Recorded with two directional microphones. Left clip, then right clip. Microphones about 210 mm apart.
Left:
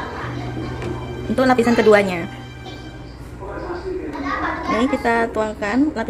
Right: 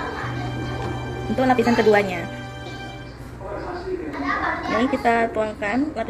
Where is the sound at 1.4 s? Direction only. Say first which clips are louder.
Left 3 dB; 20° left (ahead or behind).